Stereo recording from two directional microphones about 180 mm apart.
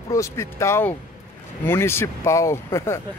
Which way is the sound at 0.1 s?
15° left (ahead or behind).